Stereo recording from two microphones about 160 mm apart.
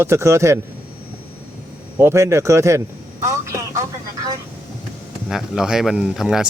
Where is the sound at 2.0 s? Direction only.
15° right (ahead or behind).